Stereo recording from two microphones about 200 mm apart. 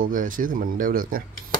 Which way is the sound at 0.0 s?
40° right (ahead or behind).